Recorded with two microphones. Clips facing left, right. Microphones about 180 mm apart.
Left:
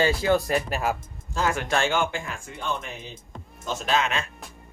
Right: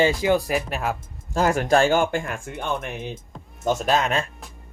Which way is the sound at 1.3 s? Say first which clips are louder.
Right 6 dB; 45° right (ahead or behind).